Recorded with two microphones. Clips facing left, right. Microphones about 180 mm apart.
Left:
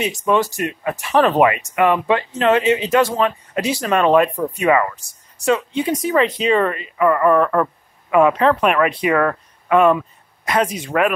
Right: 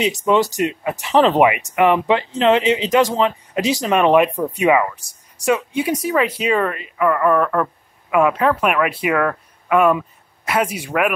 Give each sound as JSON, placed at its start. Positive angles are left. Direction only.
{"t": 0.3, "sound": "speech", "side_deg": -15}